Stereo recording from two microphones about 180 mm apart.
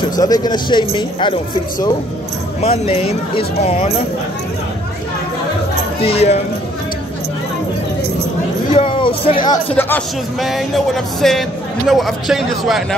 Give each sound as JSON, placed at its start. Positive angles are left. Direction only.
{"t": 0.2, "sound": "speech", "side_deg": 20}
{"t": 2.6, "sound": "speech", "side_deg": 30}
{"t": 5.9, "sound": "speech", "side_deg": 30}
{"t": 8.7, "sound": "speech", "side_deg": 30}
{"t": 9.8, "sound": "a man's voice", "side_deg": 10}
{"t": 10.4, "sound": "music", "side_deg": 0}